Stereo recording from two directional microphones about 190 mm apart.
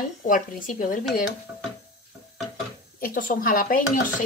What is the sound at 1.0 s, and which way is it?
Speech, centre (ahead or behind).